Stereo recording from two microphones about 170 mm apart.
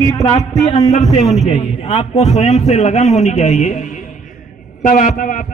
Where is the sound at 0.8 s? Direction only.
40° left (ahead or behind).